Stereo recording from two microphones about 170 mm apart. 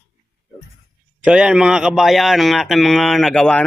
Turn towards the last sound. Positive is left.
turn(degrees=5)  # may be behind; listen again after turning